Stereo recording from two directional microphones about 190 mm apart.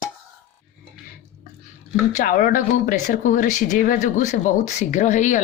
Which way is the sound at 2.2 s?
45° left (ahead or behind).